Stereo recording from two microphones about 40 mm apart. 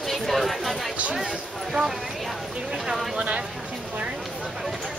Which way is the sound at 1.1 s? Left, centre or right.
Centre.